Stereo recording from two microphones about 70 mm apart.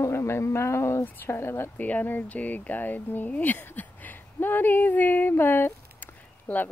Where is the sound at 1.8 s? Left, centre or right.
Left.